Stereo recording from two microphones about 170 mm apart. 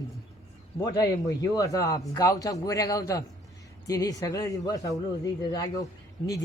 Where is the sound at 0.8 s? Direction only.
20° left (ahead or behind).